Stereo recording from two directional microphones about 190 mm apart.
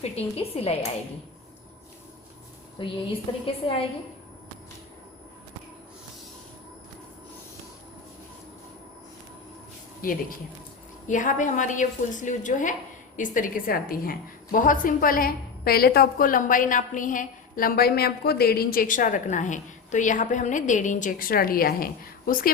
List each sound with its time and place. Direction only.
0.0 s a woman's voice: 30° left (ahead or behind)
2.7 s a woman's voice: 25° left (ahead or behind)
10.0 s a woman's voice: 50° left (ahead or behind)